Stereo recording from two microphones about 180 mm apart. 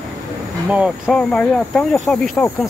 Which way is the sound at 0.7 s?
Centre (ahead or behind).